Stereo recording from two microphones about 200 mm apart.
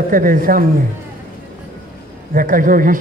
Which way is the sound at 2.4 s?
45° right (ahead or behind).